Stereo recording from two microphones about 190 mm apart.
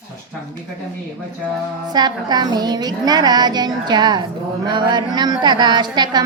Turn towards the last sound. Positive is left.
turn(degrees=-20)  # may be behind; listen again after turning